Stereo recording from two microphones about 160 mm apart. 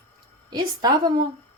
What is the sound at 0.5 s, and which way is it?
Speech, 25° right (ahead or behind).